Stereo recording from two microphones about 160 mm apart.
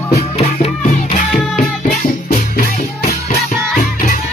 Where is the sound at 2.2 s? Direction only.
70° left (ahead or behind).